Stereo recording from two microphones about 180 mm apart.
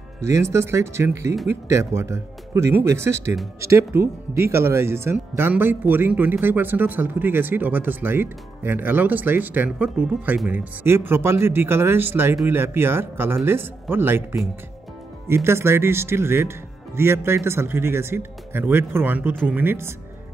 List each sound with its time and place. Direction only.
0.2 s speech: 15° right (ahead or behind)